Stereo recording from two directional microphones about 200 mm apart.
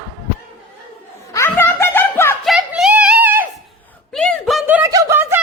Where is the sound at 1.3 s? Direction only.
15° left (ahead or behind).